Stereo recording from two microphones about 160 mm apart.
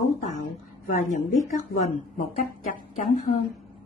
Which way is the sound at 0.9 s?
50° left (ahead or behind).